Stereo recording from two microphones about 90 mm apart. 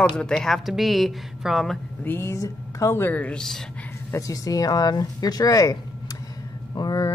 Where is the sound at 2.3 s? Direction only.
35° left (ahead or behind).